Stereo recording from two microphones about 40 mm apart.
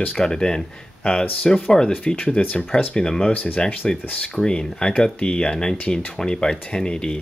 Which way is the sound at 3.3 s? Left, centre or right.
Left.